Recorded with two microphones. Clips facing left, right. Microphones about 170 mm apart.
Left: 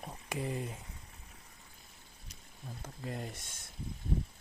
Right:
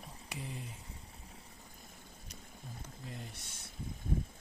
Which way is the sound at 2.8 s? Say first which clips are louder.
Left 8 dB; 55° left (ahead or behind).